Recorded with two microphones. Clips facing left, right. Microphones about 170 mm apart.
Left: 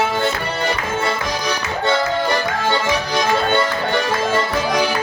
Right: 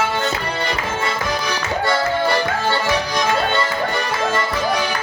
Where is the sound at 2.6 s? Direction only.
15° left (ahead or behind).